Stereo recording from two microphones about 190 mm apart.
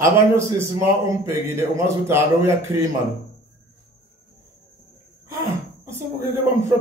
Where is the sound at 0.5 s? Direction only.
15° right (ahead or behind).